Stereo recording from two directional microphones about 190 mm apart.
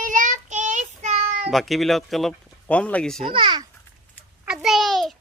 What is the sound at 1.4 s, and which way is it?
Speech, centre (ahead or behind).